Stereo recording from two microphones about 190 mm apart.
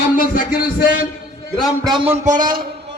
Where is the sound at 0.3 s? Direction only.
55° left (ahead or behind).